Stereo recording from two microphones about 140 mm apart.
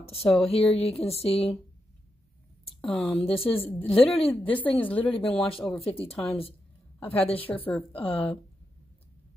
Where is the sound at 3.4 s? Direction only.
40° left (ahead or behind).